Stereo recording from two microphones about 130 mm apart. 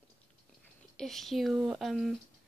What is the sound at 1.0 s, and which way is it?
Speech, centre (ahead or behind).